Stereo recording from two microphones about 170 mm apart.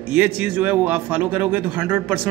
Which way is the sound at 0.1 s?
10° right (ahead or behind).